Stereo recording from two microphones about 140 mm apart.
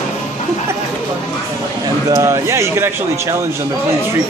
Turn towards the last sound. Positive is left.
turn(degrees=-20)  # may be behind; listen again after turning